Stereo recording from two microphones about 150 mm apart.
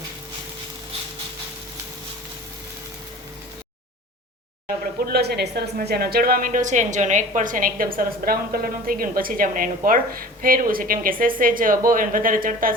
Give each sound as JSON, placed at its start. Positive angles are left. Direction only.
{"t": 5.0, "sound": "a woman's voice", "side_deg": -90}
{"t": 7.9, "sound": "a woman's voice", "side_deg": -80}